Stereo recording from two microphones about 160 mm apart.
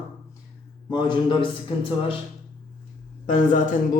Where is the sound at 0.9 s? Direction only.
30° left (ahead or behind).